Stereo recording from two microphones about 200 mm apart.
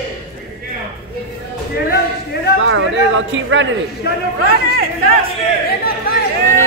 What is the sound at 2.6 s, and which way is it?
Speech, 80° right.